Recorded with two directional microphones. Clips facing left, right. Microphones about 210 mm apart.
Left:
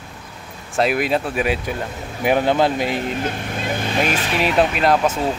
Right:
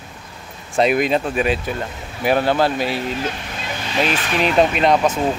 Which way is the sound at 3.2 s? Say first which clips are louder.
Left 2 dB; 50° left (ahead or behind).